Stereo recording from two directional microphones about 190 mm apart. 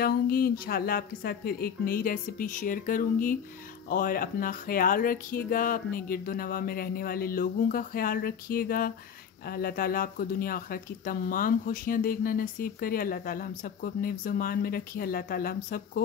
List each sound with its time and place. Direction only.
0.0 s speech: 50° left (ahead or behind)